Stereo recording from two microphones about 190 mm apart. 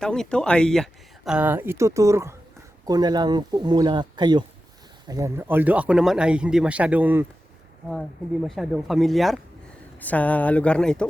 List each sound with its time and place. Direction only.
0.0 s speech: 5° left (ahead or behind)
8.4 s speech: centre (ahead or behind)